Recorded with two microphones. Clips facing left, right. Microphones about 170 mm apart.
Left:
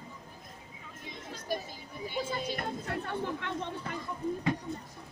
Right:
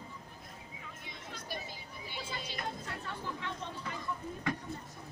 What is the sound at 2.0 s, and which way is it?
Chatter, 50° left (ahead or behind).